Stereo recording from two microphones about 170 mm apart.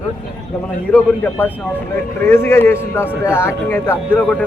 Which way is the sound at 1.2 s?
10° left (ahead or behind).